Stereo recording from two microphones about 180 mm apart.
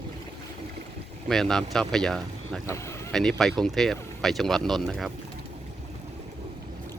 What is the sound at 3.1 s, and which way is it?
Speech, centre (ahead or behind).